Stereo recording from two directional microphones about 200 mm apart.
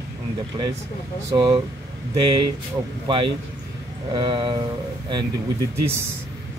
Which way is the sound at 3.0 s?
25° right (ahead or behind).